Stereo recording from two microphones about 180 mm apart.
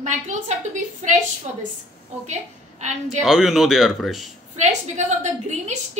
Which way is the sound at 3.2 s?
Centre (ahead or behind).